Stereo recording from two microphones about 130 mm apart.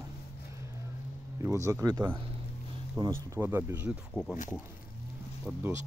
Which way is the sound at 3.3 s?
15° right (ahead or behind).